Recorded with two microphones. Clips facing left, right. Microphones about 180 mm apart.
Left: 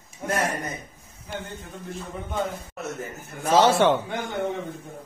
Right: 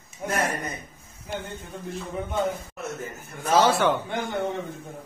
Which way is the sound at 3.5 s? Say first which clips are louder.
Left 2 dB; 25° left (ahead or behind).